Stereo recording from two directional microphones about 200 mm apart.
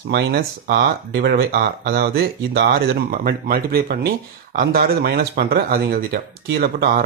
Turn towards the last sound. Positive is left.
turn(degrees=-50)  # may be behind; listen again after turning